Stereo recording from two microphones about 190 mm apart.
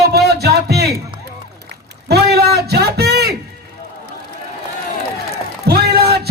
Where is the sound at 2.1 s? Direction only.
60° right (ahead or behind).